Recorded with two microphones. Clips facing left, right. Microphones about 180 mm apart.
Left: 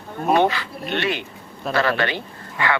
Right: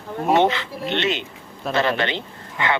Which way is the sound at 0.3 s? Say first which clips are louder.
Even; 20° right (ahead or behind).